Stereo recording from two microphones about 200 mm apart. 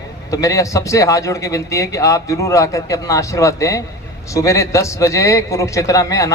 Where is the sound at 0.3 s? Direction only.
15° left (ahead or behind).